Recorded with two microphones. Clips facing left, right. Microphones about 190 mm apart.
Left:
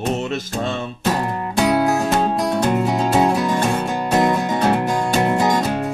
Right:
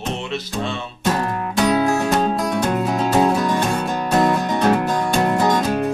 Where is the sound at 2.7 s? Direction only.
5° left (ahead or behind).